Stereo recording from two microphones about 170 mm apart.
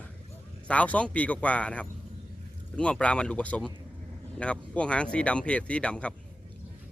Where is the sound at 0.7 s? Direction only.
10° left (ahead or behind).